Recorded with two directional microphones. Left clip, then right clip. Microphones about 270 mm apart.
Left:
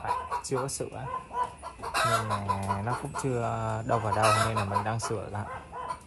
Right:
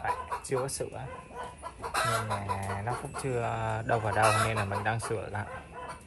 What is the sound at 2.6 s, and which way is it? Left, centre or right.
Speech, centre.